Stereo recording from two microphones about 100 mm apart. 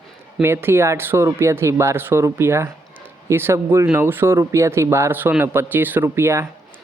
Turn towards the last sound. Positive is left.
turn(degrees=-25)  # may be behind; listen again after turning